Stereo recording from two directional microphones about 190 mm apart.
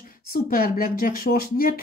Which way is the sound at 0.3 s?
50° left (ahead or behind).